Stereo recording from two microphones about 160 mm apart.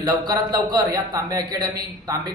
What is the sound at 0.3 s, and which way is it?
A man's voice, 25° right (ahead or behind).